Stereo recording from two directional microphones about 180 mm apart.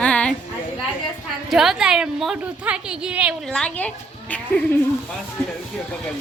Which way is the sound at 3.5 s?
5° left (ahead or behind).